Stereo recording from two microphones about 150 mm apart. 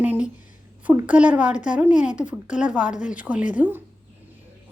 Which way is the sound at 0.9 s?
10° right (ahead or behind).